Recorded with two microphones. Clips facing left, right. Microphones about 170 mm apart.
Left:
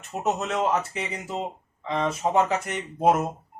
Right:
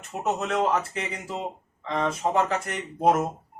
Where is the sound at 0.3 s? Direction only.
5° left (ahead or behind).